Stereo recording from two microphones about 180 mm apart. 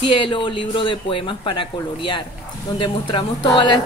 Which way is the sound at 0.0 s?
25° left (ahead or behind).